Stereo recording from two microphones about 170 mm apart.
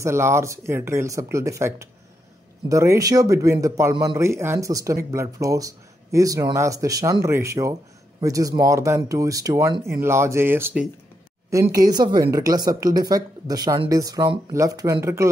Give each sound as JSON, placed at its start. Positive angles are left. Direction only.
{"t": 0.0, "sound": "speech", "side_deg": -15}
{"t": 11.5, "sound": "speech", "side_deg": -20}